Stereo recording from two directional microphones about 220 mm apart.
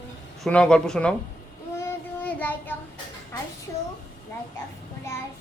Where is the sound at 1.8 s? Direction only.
10° left (ahead or behind).